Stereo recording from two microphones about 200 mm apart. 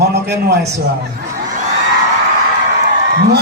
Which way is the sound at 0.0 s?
55° right (ahead or behind).